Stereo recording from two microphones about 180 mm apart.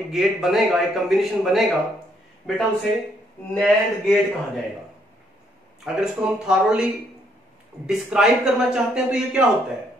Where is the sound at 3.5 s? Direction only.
Centre (ahead or behind).